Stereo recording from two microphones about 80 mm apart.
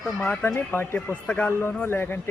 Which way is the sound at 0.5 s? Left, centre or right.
Left.